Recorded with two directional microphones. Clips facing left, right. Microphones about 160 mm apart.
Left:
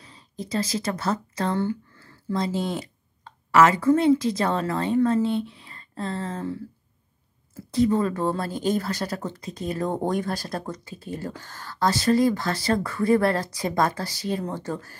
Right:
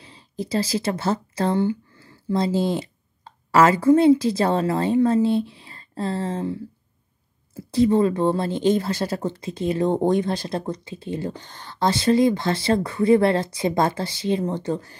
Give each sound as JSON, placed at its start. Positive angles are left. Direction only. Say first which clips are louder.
{"t": 0.0, "sound": "speech", "louder": "right 5 dB", "side_deg": -30}
{"t": 1.6, "sound": "a sound", "louder": "right 4 dB", "side_deg": -10}
{"t": 2.3, "sound": "a woman's voice", "louder": "right 5 dB", "side_deg": -30}
{"t": 7.7, "sound": "speech", "louder": "right 4 dB", "side_deg": -30}